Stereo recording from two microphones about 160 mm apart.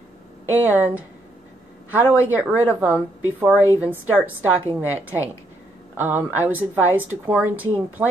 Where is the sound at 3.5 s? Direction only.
15° left (ahead or behind).